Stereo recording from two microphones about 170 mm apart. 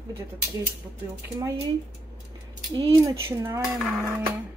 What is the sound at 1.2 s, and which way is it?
Speech, 20° right (ahead or behind).